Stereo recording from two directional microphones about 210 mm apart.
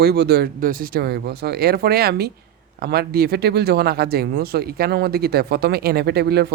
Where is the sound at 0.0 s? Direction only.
50° right (ahead or behind).